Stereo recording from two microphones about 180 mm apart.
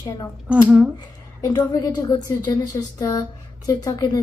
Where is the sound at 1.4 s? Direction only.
20° left (ahead or behind).